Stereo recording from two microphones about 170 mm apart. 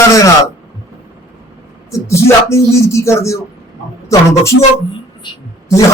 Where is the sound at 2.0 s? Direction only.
15° left (ahead or behind).